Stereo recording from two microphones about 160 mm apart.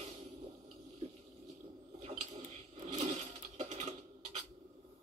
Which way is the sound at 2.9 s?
40° right (ahead or behind).